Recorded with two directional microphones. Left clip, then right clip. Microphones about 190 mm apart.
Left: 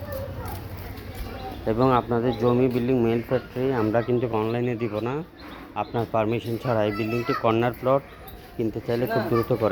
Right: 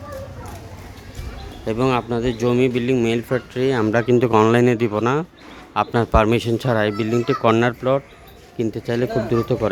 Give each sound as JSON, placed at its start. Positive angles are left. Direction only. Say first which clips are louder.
{"t": 1.6, "sound": "speech", "louder": "right 1 dB", "side_deg": -25}